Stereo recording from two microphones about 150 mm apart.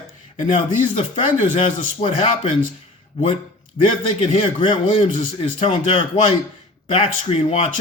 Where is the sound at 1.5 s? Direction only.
35° left (ahead or behind).